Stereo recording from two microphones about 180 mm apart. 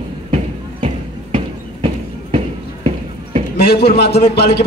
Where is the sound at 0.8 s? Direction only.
30° right (ahead or behind).